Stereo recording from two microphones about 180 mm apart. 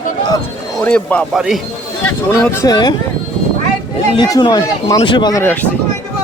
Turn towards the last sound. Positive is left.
turn(degrees=10)  # may be behind; listen again after turning